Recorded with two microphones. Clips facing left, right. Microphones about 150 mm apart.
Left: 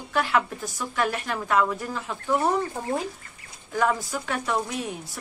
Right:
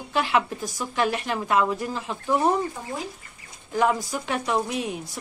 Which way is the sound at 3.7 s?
20° right (ahead or behind).